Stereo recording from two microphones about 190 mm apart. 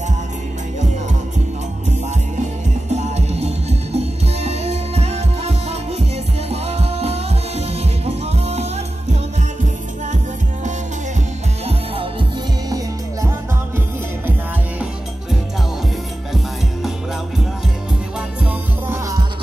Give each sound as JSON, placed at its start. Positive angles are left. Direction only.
{"t": 2.9, "sound": "music", "side_deg": -35}
{"t": 11.6, "sound": "music", "side_deg": -25}
{"t": 18.4, "sound": "music", "side_deg": -10}